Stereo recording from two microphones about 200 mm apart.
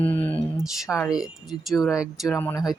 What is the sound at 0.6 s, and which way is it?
Speech, centre (ahead or behind).